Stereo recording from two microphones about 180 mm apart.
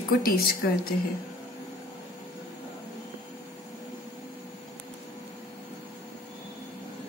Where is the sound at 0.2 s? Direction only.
55° left (ahead or behind).